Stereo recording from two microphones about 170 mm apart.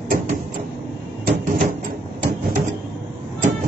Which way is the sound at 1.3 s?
55° right (ahead or behind).